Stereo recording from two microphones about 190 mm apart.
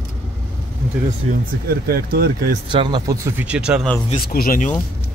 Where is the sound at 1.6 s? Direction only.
50° right (ahead or behind).